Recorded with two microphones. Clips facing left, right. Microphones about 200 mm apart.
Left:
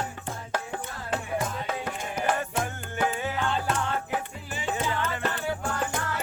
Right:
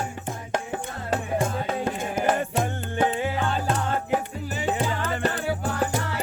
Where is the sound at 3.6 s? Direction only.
40° right (ahead or behind).